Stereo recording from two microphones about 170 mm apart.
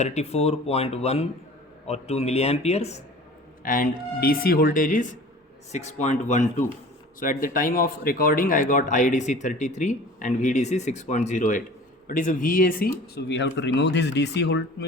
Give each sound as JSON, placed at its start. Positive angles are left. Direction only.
{"t": 0.0, "sound": "speech", "side_deg": 40}
{"t": 3.6, "sound": "speech", "side_deg": 55}